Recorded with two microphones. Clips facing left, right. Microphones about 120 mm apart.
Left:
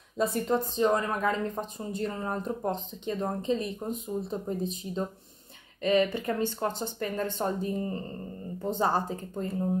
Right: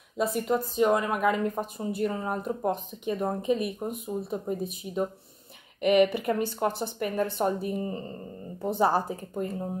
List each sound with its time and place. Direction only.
0.2 s speech: 5° right (ahead or behind)